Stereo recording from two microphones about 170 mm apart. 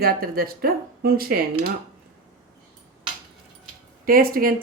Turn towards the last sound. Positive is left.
turn(degrees=-60)  # may be behind; listen again after turning